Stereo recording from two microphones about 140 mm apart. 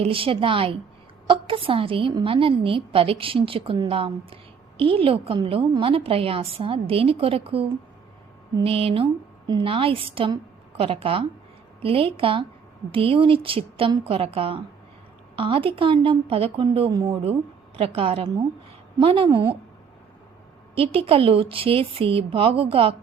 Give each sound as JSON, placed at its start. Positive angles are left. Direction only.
{"t": 0.0, "sound": "a woman's voice", "side_deg": -40}
{"t": 16.9, "sound": "speech", "side_deg": -30}
{"t": 17.7, "sound": "a woman's voice", "side_deg": -40}
{"t": 20.7, "sound": "a woman's voice", "side_deg": -40}